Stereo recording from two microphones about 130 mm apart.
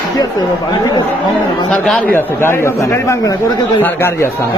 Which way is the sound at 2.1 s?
20° left (ahead or behind).